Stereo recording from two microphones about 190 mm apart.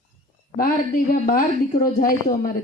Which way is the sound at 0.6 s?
50° left (ahead or behind).